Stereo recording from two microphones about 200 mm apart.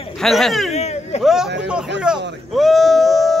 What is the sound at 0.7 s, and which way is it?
Speech, 35° left (ahead or behind).